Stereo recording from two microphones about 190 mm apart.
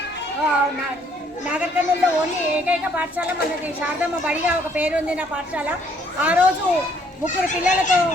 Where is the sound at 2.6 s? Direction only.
10° right (ahead or behind).